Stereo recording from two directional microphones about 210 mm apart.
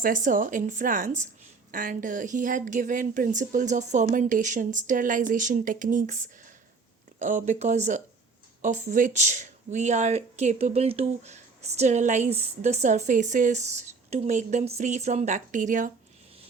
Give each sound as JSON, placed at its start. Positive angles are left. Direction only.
{"t": 0.0, "sound": "speech", "side_deg": -40}